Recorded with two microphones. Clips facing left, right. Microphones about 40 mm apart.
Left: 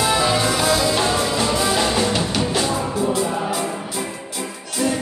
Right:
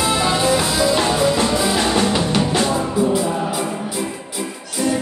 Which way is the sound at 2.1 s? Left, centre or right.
Centre.